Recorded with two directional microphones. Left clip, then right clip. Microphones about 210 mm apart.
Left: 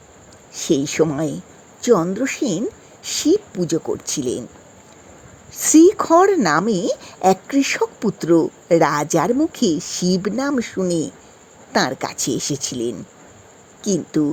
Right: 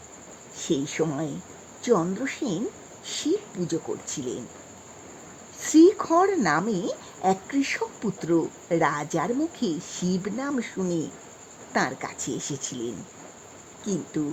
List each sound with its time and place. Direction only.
0.5 s a sound: 20° left (ahead or behind)
1.0 s speech: 15° left (ahead or behind)
5.5 s speech: 25° left (ahead or behind)
14.1 s speech: 25° left (ahead or behind)